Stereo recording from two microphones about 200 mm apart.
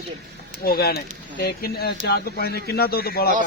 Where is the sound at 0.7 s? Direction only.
50° left (ahead or behind).